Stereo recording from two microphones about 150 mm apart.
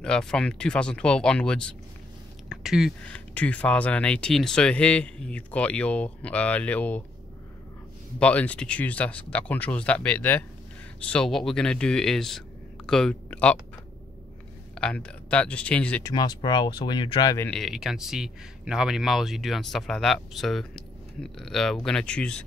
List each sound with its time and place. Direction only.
0.0 s speech: 5° left (ahead or behind)
3.0 s speech: 10° left (ahead or behind)
8.2 s speech: 10° left (ahead or behind)
14.8 s speech: 5° left (ahead or behind)
16.0 s speech: 25° left (ahead or behind)
17.5 s speech: centre (ahead or behind)